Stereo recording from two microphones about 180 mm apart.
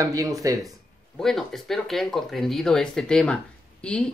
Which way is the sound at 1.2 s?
Centre (ahead or behind).